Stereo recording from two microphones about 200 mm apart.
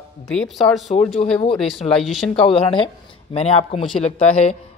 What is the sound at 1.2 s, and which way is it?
Speech, 35° left (ahead or behind).